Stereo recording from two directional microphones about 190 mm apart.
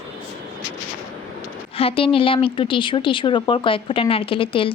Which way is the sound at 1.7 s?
30° left (ahead or behind).